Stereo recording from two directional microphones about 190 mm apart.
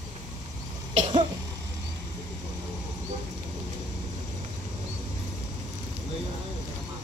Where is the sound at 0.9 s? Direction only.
30° right (ahead or behind).